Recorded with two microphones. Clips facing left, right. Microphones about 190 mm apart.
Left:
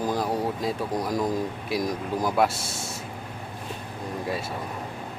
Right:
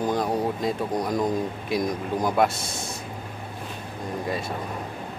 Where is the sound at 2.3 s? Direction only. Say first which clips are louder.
Right 1 dB; 5° left (ahead or behind).